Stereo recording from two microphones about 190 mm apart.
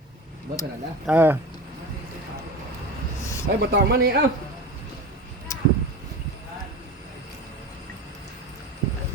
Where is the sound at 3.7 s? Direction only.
55° right (ahead or behind).